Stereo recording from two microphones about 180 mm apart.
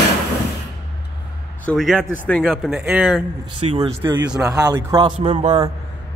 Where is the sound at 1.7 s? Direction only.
5° left (ahead or behind).